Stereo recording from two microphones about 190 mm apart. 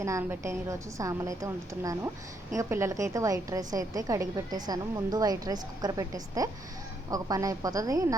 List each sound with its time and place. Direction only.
0.0 s a woman's voice: 15° right (ahead or behind)